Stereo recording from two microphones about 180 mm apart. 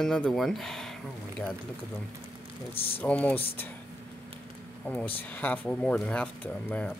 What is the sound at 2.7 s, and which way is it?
Speech, 30° left (ahead or behind).